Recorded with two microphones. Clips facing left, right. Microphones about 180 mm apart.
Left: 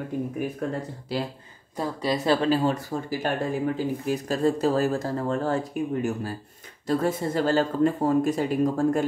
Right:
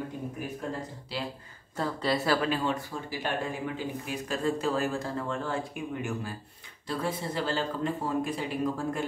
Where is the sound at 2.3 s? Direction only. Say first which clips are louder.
Left 6 dB; 35° left (ahead or behind).